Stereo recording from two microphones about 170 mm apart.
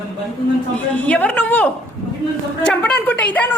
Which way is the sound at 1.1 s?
10° left (ahead or behind).